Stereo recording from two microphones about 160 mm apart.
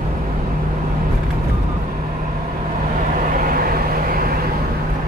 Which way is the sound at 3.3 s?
65° right (ahead or behind).